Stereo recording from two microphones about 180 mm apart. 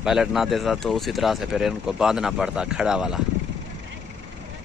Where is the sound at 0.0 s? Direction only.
Centre (ahead or behind).